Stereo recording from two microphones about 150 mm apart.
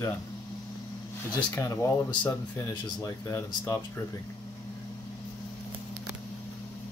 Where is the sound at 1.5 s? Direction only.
20° left (ahead or behind).